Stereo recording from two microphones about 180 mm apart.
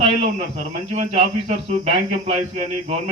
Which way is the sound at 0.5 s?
40° right (ahead or behind).